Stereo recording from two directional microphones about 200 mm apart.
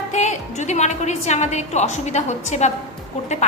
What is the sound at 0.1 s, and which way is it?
A woman's voice, 35° left (ahead or behind).